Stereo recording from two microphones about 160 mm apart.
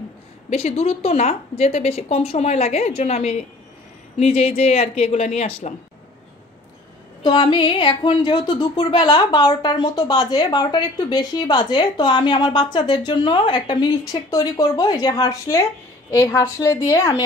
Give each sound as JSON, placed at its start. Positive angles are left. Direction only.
{"t": 0.5, "sound": "a woman's voice", "side_deg": 40}
{"t": 7.2, "sound": "speech", "side_deg": 30}